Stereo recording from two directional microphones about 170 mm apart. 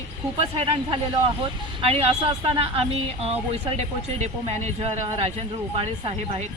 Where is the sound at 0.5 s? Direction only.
30° right (ahead or behind).